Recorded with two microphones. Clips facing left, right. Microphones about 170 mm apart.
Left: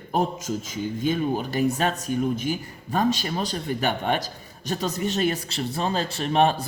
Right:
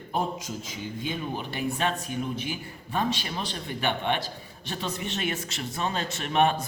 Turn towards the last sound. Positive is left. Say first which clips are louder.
# left 3 dB
turn(degrees=35)  # may be behind; listen again after turning